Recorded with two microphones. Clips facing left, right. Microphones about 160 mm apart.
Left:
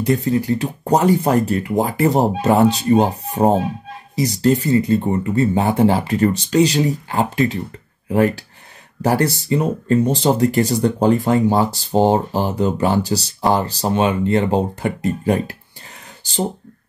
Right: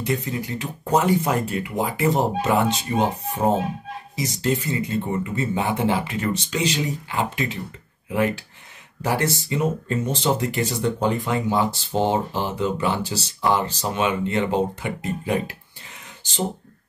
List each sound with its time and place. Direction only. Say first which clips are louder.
0.0 s speech: left 8 dB; 35° left (ahead or behind)